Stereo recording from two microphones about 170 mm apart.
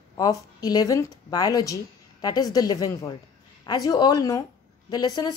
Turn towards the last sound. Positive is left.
turn(degrees=20)  # may be behind; listen again after turning